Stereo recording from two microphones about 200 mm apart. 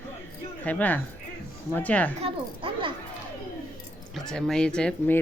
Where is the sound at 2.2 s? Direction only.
25° right (ahead or behind).